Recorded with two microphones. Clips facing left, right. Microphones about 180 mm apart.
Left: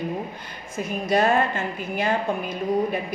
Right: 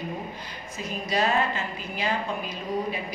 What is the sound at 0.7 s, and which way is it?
A woman's voice, 50° left (ahead or behind).